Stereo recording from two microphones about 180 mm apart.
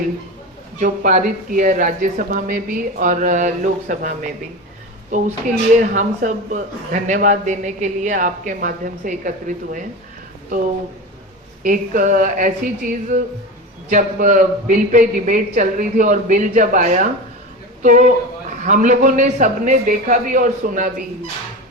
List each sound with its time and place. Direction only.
0.8 s a man's voice: 45° right (ahead or behind)
5.1 s a man's voice: 45° right (ahead or behind)
11.6 s a man's voice: 50° right (ahead or behind)